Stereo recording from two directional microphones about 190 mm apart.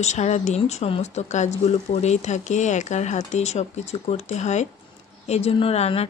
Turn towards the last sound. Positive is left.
turn(degrees=35)  # may be behind; listen again after turning